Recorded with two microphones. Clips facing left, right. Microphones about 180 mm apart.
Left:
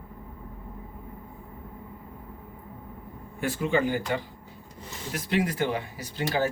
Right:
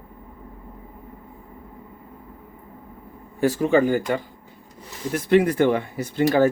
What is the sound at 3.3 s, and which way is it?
Speech, 35° right (ahead or behind).